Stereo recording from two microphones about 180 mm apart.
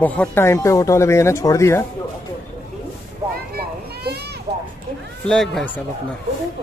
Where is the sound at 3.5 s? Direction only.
60° right (ahead or behind).